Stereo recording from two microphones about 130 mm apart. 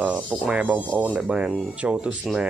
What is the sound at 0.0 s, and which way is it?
Speech, 10° right (ahead or behind).